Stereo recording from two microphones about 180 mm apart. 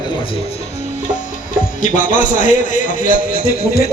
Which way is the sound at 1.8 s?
45° left (ahead or behind).